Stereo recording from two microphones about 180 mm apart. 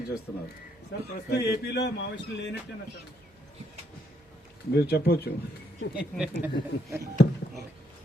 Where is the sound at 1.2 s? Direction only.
65° left (ahead or behind).